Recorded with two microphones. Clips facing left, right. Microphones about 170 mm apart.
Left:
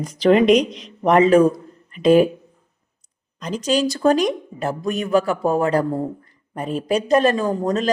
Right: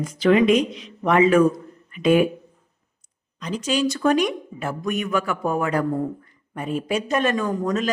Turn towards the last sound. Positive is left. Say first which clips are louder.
# left 3 dB
turn(degrees=35)  # may be behind; listen again after turning